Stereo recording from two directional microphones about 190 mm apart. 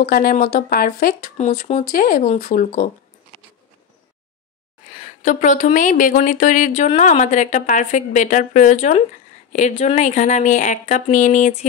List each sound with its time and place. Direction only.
0.0 s speech: 50° left (ahead or behind)
4.9 s speech: 45° left (ahead or behind)